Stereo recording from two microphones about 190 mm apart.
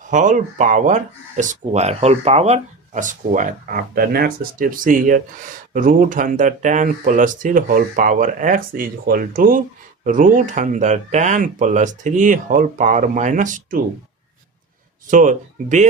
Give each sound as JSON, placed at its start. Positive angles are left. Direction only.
{"t": 0.1, "sound": "speech", "side_deg": -40}
{"t": 15.1, "sound": "speech", "side_deg": -40}